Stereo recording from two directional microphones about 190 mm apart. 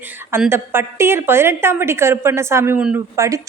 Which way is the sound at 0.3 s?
15° right (ahead or behind).